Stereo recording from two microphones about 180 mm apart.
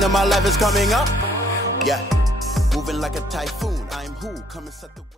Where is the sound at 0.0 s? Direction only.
Centre (ahead or behind).